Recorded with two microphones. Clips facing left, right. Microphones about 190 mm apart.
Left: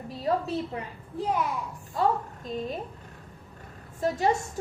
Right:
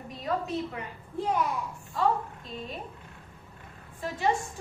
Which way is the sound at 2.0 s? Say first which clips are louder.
Left 1 dB; 40° left (ahead or behind).